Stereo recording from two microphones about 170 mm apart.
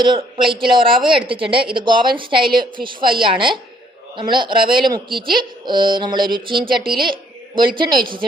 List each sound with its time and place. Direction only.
0.0 s speech: 30° right (ahead or behind)
7.0 s a sound: 30° right (ahead or behind)
7.8 s speech: 25° right (ahead or behind)